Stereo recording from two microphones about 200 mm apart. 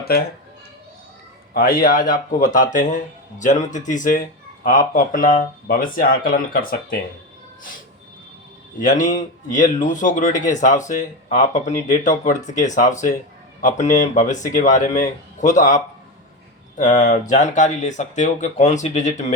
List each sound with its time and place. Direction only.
0.0 s speech: 50° left (ahead or behind)
1.5 s speech: 45° left (ahead or behind)
8.8 s speech: 40° left (ahead or behind)